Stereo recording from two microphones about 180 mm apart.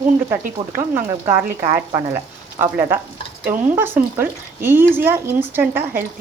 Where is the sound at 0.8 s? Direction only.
15° right (ahead or behind).